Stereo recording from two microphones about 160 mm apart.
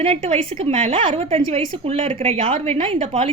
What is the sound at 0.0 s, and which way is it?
A woman's voice, 40° right (ahead or behind).